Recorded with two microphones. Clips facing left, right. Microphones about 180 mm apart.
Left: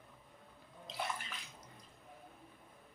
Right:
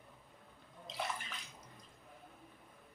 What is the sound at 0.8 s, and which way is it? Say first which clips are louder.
Bathtub: even; centre (ahead or behind).